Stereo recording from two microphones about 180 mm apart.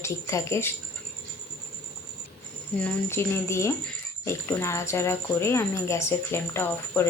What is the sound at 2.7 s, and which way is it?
Speech, 10° left (ahead or behind).